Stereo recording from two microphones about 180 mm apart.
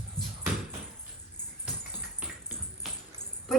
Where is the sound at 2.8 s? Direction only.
Centre (ahead or behind).